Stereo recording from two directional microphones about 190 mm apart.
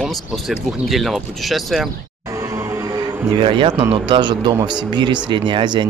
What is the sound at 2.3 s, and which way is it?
Music, 15° right (ahead or behind).